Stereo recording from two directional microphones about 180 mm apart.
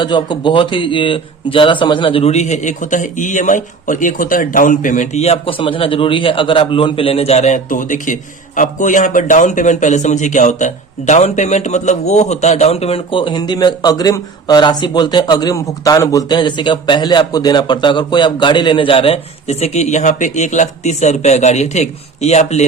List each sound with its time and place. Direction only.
0.0 s a man's voice: 25° left (ahead or behind)